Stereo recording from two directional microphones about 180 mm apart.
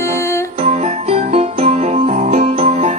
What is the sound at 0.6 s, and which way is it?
Music, 40° right (ahead or behind).